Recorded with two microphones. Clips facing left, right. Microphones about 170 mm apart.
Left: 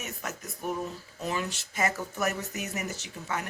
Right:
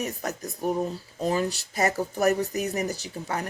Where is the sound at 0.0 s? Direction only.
35° right (ahead or behind).